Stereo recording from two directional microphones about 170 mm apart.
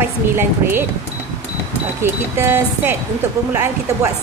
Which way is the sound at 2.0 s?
15° right (ahead or behind).